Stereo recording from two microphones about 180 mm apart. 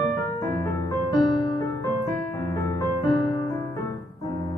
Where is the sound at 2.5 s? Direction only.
15° left (ahead or behind).